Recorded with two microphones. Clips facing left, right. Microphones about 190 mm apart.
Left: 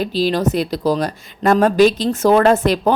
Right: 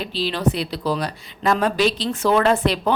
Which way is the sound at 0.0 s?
45° left (ahead or behind).